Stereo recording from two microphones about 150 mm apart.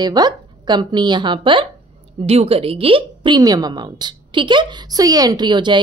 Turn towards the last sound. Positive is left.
turn(degrees=-30)  # may be behind; listen again after turning